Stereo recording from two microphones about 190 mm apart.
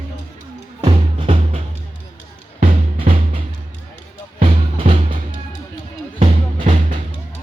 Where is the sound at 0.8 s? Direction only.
30° right (ahead or behind).